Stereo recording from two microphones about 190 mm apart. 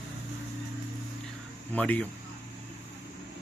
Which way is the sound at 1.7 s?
10° left (ahead or behind).